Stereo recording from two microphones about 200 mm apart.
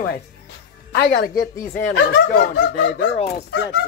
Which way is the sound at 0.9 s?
45° left (ahead or behind).